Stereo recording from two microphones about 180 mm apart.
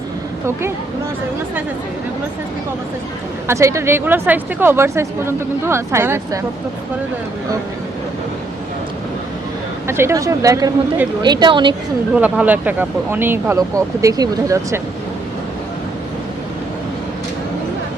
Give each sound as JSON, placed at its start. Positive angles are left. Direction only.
{"t": 3.4, "sound": "speech", "side_deg": -15}
{"t": 9.8, "sound": "speech", "side_deg": -15}
{"t": 11.2, "sound": "a woman's voice", "side_deg": -25}
{"t": 12.1, "sound": "speech", "side_deg": -10}